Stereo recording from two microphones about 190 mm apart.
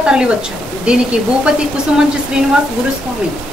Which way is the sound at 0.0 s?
5° right (ahead or behind).